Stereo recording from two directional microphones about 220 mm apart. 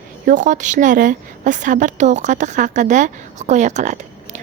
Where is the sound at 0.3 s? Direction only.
35° right (ahead or behind).